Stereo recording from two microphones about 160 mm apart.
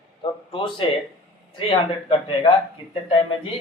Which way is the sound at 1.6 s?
35° left (ahead or behind).